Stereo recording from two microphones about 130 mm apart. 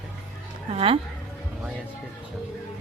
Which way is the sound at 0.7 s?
45° right (ahead or behind).